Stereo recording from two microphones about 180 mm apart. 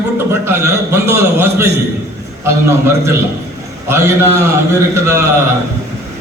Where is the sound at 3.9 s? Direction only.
15° right (ahead or behind).